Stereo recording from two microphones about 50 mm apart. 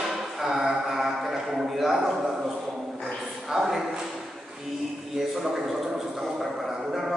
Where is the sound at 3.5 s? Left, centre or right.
Centre.